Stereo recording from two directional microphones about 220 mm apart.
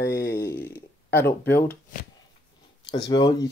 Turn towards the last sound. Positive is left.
turn(degrees=20)  # may be behind; listen again after turning